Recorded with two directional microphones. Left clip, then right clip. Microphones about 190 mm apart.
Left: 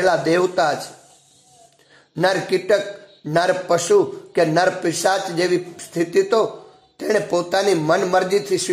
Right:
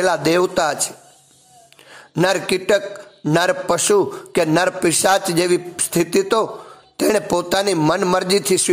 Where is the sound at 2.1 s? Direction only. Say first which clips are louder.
Right 1 dB; 30° right (ahead or behind).